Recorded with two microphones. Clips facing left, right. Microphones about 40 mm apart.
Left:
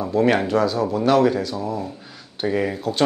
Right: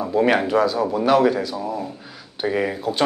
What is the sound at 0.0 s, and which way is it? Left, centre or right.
A man's voice, centre.